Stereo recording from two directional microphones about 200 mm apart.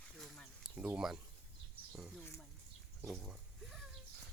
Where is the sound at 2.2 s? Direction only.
10° left (ahead or behind).